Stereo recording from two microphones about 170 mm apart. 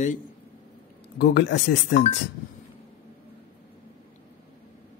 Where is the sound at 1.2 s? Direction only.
90° left.